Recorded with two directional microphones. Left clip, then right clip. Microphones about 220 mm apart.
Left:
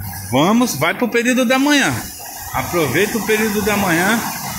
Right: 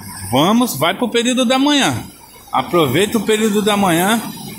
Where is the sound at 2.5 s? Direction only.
25° right (ahead or behind).